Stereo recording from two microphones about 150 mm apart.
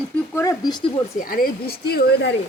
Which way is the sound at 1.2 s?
75° left (ahead or behind).